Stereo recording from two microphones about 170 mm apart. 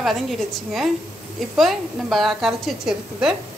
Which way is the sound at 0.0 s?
Centre (ahead or behind).